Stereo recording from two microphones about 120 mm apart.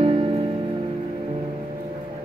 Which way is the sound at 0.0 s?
50° right (ahead or behind).